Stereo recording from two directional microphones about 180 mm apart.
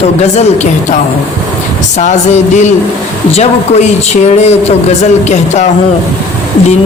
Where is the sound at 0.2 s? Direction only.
40° left (ahead or behind).